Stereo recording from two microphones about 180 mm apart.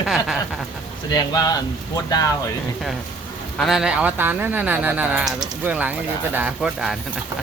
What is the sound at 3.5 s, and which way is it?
Speech, centre (ahead or behind).